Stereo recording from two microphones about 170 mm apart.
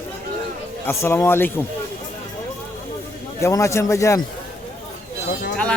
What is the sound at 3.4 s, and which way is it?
Speech, 15° left (ahead or behind).